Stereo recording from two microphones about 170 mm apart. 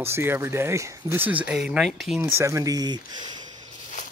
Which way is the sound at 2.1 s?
15° right (ahead or behind).